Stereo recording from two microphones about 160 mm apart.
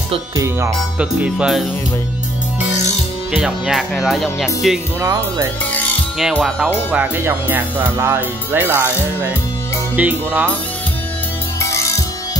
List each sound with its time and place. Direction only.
0.4 s speech: 20° right (ahead or behind)
0.9 s speech: 5° right (ahead or behind)
3.3 s speech: 5° right (ahead or behind)
5.0 s speech: 20° right (ahead or behind)
6.3 s speech: centre (ahead or behind)